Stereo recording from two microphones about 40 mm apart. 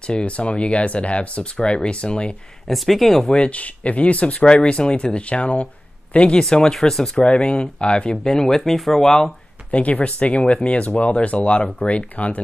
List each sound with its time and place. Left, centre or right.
0.0 s speech: left
2.7 s speech: centre
3.4 s speech: left
6.4 s speech: centre
7.2 s speech: left
9.7 s speech: left